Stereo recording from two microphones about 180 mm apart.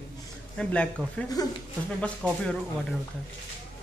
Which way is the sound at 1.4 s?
20° left (ahead or behind).